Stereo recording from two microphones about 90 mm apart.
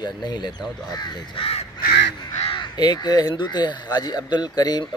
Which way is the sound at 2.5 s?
50° left (ahead or behind).